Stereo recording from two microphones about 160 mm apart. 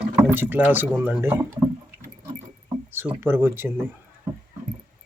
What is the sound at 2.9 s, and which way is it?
Speech, 15° right (ahead or behind).